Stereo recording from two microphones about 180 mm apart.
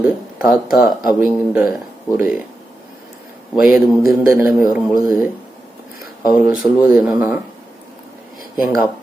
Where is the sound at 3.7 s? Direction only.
50° left (ahead or behind).